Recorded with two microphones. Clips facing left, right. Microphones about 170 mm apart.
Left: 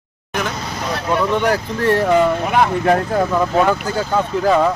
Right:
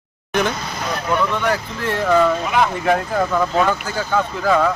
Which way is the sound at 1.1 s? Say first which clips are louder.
Left 3 dB; 30° left (ahead or behind).